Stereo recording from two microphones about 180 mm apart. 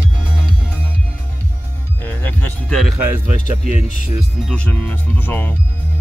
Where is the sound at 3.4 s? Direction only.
35° left (ahead or behind).